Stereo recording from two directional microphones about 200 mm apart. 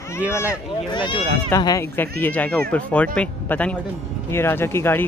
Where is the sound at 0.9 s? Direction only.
25° left (ahead or behind).